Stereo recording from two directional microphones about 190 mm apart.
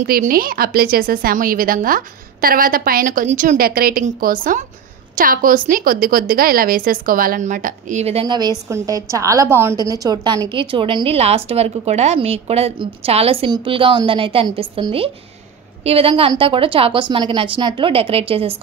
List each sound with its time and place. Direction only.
0.0 s a woman's voice: 50° right (ahead or behind); by 18.6 s 30° right (ahead or behind)